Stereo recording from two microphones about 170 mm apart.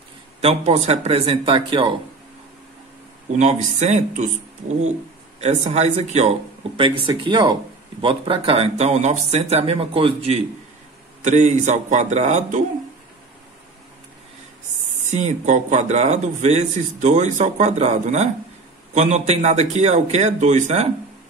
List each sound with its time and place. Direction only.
0.4 s speech: 40° right (ahead or behind)
3.3 s speech: 40° right (ahead or behind)
5.4 s speech: 40° right (ahead or behind)
11.2 s a man's voice: 45° right (ahead or behind)
15.1 s a man's voice: 45° right (ahead or behind)